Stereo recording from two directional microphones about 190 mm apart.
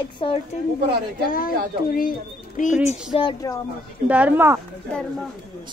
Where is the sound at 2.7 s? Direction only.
5° right (ahead or behind).